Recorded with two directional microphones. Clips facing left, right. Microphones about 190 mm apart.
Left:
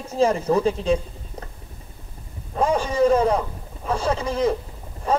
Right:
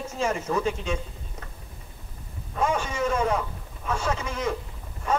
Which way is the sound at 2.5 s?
35° left (ahead or behind).